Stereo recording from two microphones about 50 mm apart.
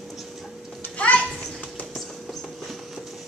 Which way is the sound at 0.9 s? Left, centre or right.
Left.